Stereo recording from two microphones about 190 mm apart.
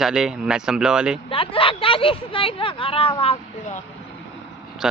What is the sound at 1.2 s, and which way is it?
Speech, 30° left (ahead or behind).